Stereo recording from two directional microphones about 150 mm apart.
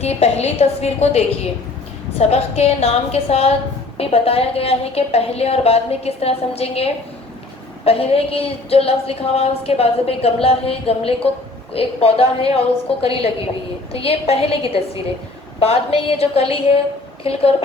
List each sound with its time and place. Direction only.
0.0 s a woman's voice: 45° left (ahead or behind)